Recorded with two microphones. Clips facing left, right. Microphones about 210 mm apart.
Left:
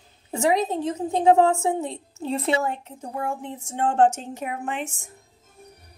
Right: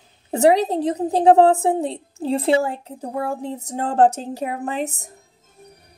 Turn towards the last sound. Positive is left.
turn(degrees=-35)  # may be behind; listen again after turning